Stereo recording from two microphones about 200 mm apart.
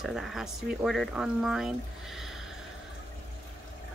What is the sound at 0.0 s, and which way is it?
A woman's voice, centre (ahead or behind).